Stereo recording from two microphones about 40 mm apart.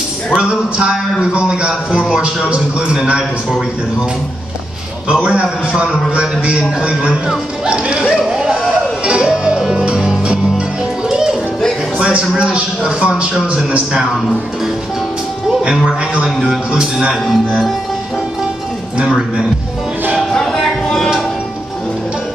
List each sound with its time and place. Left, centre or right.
0.3 s speech: right
5.0 s a man's voice: right
7.6 s music: right
11.1 s music: centre
12.0 s a man's voice: right
13.1 s a man's voice: right
16.4 s a man's voice: centre
18.9 s speech: right
20.3 s music: centre